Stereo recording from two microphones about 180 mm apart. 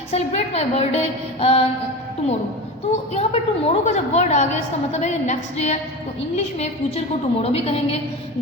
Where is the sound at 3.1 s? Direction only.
35° left (ahead or behind).